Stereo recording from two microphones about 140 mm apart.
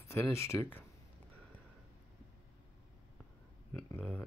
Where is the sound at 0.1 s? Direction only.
20° left (ahead or behind).